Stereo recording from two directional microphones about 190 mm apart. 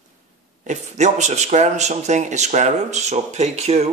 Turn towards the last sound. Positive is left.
turn(degrees=-35)  # may be behind; listen again after turning